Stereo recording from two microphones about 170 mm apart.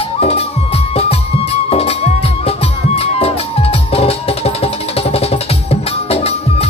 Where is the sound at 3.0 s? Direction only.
35° left (ahead or behind).